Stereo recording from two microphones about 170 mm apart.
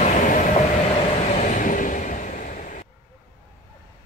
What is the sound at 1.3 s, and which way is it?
Vehicle, 45° left (ahead or behind).